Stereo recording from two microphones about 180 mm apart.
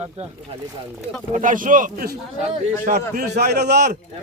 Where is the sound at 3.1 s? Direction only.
65° right (ahead or behind).